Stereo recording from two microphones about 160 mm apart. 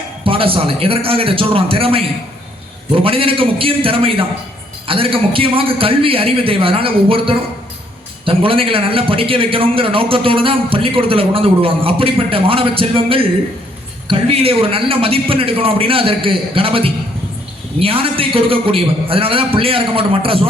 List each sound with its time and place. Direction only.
0.3 s a man's voice: 35° right (ahead or behind)